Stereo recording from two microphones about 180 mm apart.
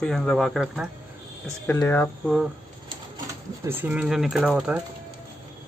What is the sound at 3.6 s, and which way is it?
Speech, 10° right (ahead or behind).